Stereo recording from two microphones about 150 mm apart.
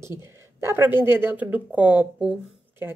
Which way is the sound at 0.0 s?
20° right (ahead or behind).